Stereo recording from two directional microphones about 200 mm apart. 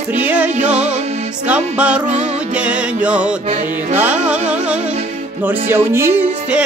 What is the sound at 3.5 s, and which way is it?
Music, 40° right (ahead or behind).